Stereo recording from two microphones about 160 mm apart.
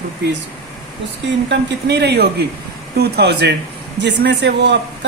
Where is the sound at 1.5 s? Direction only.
90° right.